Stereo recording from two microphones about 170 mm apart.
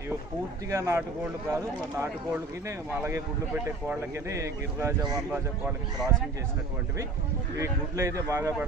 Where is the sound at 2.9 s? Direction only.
10° right (ahead or behind).